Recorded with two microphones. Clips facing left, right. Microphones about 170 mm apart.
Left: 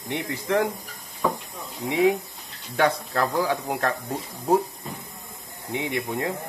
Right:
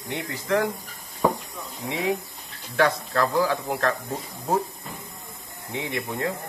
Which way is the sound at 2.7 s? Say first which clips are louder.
Even; 20° left (ahead or behind).